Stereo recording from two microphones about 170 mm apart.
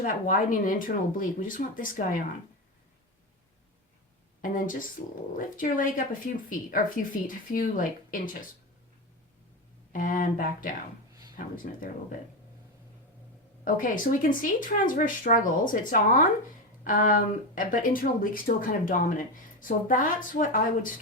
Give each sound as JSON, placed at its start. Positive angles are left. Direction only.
{"t": 0.0, "sound": "speech", "side_deg": 55}
{"t": 4.4, "sound": "speech", "side_deg": 55}
{"t": 9.9, "sound": "speech", "side_deg": 50}
{"t": 13.7, "sound": "speech", "side_deg": 55}